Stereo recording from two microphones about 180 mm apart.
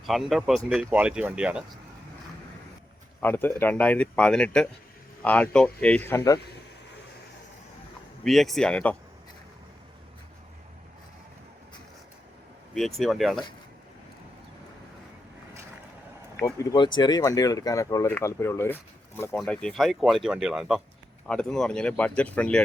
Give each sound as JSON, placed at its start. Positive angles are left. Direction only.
{"t": 0.0, "sound": "speech", "side_deg": 0}
{"t": 3.2, "sound": "speech", "side_deg": 10}
{"t": 8.2, "sound": "speech", "side_deg": 0}
{"t": 13.0, "sound": "speech", "side_deg": 0}
{"t": 16.4, "sound": "speech", "side_deg": 20}